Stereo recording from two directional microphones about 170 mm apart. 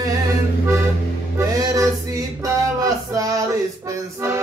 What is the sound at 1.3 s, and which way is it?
Music, 20° right (ahead or behind).